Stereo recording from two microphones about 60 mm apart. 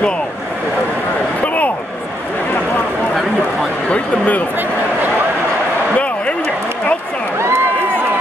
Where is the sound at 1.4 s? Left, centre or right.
Left.